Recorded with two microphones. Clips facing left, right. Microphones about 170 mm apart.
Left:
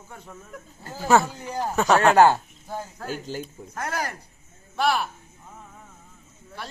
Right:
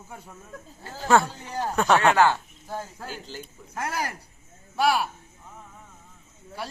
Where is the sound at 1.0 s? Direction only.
5° left (ahead or behind).